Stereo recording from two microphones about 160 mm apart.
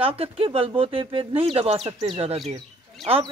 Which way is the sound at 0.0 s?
35° right (ahead or behind).